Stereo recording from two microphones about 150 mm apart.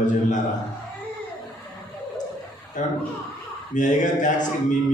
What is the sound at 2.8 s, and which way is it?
Speech, 55° left (ahead or behind).